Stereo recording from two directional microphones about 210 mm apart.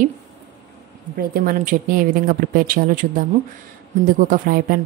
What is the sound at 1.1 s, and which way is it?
A woman's voice, 40° right (ahead or behind).